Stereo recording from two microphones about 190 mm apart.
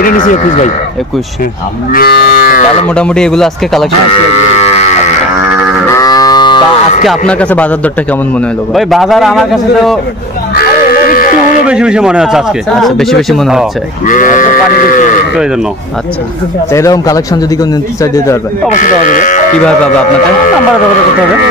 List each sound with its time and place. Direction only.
0.0 s sheep: 45° left (ahead or behind)
1.9 s sheep: 55° left (ahead or behind)
2.9 s speech: 5° left (ahead or behind)
4.1 s livestock: 35° left (ahead or behind)
5.9 s livestock: 20° left (ahead or behind)
7.1 s a man's voice: 5° left (ahead or behind)
10.5 s sheep: 50° left (ahead or behind)
11.6 s speech: 5° right (ahead or behind)
14.0 s sheep: 45° left (ahead or behind)
16.7 s a man's voice: 15° left (ahead or behind)
18.8 s sheep: 45° left (ahead or behind)